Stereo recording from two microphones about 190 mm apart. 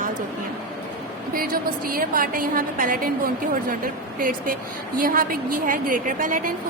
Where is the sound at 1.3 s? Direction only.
50° right (ahead or behind).